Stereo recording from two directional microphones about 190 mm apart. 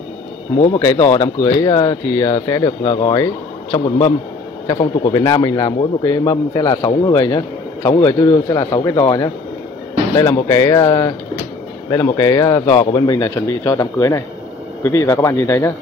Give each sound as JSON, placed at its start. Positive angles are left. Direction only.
{"t": 0.7, "sound": "speech", "side_deg": 20}
{"t": 4.6, "sound": "speech", "side_deg": 20}